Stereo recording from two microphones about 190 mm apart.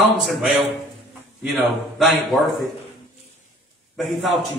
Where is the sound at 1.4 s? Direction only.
Centre (ahead or behind).